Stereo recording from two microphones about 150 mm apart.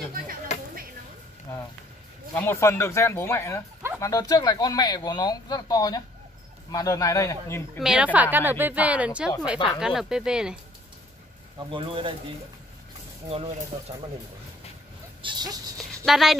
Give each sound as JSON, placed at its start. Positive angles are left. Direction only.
{"t": 2.3, "sound": "speech", "side_deg": 15}
{"t": 7.8, "sound": "a woman's voice", "side_deg": -5}
{"t": 11.7, "sound": "speech", "side_deg": -35}
{"t": 13.3, "sound": "speech", "side_deg": -40}
{"t": 15.2, "sound": "a sound", "side_deg": -30}
{"t": 16.1, "sound": "speech", "side_deg": 0}